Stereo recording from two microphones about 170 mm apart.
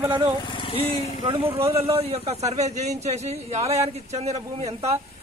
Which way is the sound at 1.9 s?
35° right (ahead or behind).